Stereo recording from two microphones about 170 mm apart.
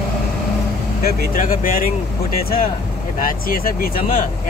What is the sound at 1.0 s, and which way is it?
Speech, 55° left (ahead or behind).